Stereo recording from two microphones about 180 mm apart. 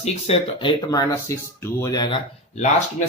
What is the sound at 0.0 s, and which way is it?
Speech, 35° left (ahead or behind).